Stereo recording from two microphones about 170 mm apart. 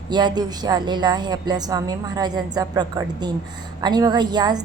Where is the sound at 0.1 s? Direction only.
25° right (ahead or behind).